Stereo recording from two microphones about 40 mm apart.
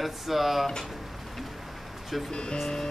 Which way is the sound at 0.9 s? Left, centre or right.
Centre.